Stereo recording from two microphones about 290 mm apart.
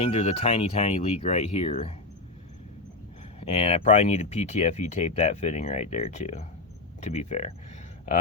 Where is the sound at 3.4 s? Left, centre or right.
Centre.